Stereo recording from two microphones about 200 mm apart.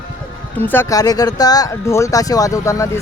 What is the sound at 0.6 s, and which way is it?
Speech, 10° left (ahead or behind).